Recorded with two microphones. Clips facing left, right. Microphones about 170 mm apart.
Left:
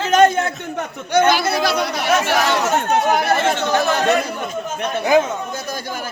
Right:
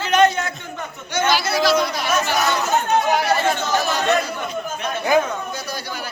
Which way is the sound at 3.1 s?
55° left (ahead or behind).